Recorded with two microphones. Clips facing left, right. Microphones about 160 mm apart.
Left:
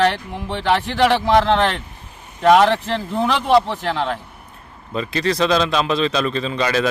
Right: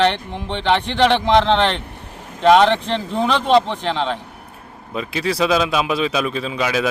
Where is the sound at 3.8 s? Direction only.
5° left (ahead or behind).